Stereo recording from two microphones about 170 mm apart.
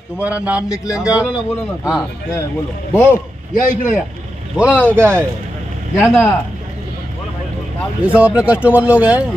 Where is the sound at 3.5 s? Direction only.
50° left (ahead or behind).